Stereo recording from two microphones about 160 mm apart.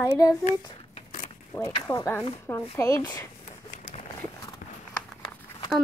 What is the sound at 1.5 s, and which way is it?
Speech, 15° left (ahead or behind).